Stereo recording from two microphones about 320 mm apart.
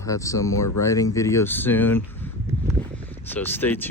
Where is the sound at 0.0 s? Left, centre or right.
Centre.